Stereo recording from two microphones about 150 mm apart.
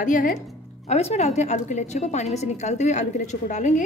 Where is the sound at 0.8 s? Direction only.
45° left (ahead or behind).